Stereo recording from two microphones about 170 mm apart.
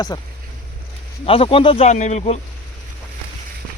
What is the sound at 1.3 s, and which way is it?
Speech, 30° left (ahead or behind).